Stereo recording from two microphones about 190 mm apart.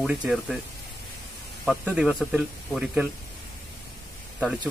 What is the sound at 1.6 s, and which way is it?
Speech, 5° right (ahead or behind).